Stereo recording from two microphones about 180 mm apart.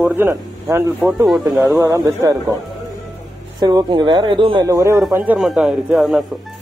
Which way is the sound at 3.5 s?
20° right (ahead or behind).